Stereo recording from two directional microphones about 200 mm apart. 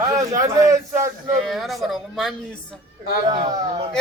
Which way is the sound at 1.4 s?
Centre (ahead or behind).